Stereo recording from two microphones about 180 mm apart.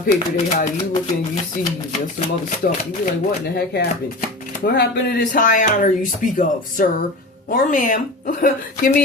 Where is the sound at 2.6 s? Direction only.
50° left (ahead or behind).